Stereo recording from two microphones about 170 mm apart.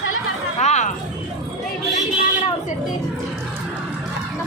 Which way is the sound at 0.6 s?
40° left (ahead or behind).